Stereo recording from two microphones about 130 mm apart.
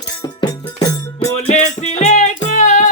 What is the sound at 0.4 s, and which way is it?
Music, 30° left (ahead or behind).